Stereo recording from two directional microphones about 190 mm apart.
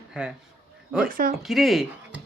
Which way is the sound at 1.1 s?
50° right (ahead or behind).